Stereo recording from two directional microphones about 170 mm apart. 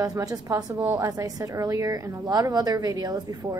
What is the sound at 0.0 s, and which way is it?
A woman's voice, 20° right (ahead or behind).